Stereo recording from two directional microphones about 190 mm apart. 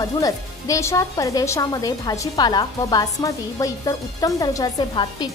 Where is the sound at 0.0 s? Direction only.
15° left (ahead or behind).